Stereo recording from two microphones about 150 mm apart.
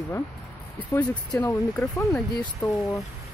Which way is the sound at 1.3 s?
20° left (ahead or behind).